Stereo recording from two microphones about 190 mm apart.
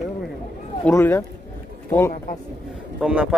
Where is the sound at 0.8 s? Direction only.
10° left (ahead or behind).